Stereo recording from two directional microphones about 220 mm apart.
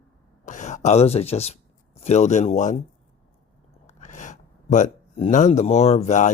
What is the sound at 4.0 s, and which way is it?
Speech, 35° left (ahead or behind).